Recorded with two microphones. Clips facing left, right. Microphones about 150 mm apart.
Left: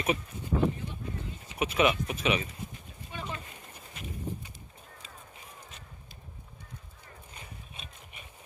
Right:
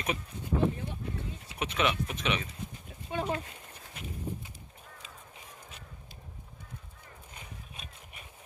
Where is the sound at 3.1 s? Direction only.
55° right (ahead or behind).